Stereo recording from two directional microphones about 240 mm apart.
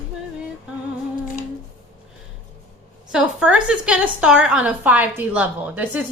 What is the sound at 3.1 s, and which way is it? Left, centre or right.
A woman's voice, centre.